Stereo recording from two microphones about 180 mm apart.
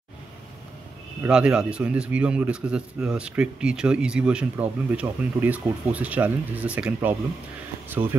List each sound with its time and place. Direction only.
1.2 s a man's voice: 5° right (ahead or behind)